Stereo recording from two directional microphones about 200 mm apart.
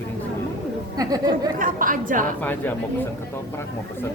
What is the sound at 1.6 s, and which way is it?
Speech, 45° right (ahead or behind).